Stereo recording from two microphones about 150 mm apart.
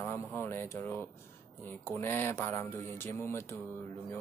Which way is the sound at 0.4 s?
15° left (ahead or behind).